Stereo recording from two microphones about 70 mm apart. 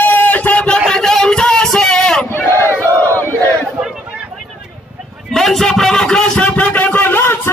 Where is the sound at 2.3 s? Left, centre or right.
Left.